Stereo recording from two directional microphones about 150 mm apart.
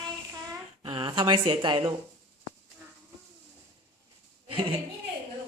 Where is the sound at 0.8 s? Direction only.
35° right (ahead or behind).